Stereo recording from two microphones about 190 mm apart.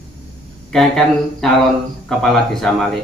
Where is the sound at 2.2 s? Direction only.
Centre (ahead or behind).